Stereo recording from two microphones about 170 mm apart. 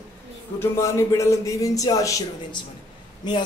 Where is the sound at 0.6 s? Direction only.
15° left (ahead or behind).